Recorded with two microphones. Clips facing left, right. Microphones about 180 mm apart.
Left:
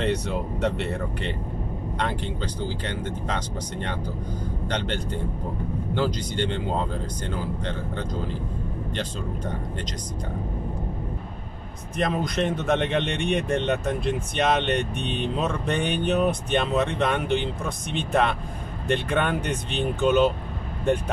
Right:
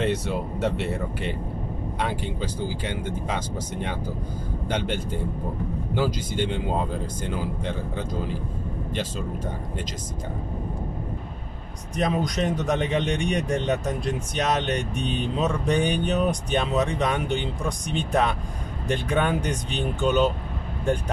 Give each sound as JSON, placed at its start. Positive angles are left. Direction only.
{"t": 0.0, "sound": "speech", "side_deg": -5}
{"t": 12.0, "sound": "speech", "side_deg": 0}